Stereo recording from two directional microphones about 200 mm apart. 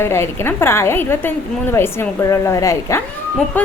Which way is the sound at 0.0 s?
10° left (ahead or behind).